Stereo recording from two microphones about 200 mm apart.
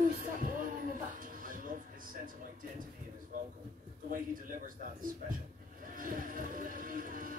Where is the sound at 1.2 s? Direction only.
45° right (ahead or behind).